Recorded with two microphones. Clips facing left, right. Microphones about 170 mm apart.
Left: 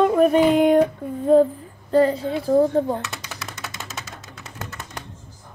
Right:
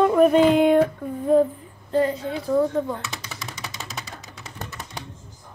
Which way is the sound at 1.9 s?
35° left (ahead or behind).